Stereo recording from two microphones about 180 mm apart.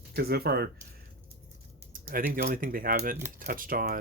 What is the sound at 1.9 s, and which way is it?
Speech, 50° right (ahead or behind).